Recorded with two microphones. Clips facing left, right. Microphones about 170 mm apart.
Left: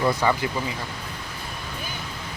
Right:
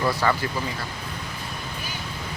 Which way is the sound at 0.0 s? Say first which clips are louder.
Left 1 dB; 20° left (ahead or behind).